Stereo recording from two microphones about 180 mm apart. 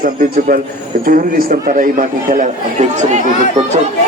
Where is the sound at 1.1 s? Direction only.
50° right (ahead or behind).